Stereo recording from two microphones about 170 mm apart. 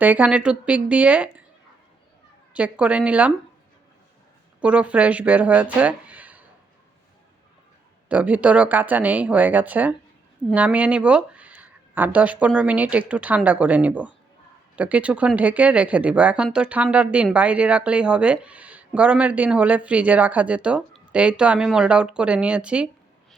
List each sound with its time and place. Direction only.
0.0 s speech: 10° right (ahead or behind)
2.5 s speech: 5° right (ahead or behind)
4.6 s speech: 5° right (ahead or behind)
8.1 s speech: 10° right (ahead or behind)